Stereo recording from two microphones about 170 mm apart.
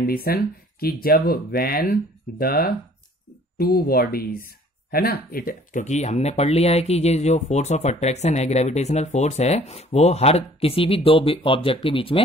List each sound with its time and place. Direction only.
0.0 s speech: 60° left (ahead or behind); by 12.2 s 30° left (ahead or behind)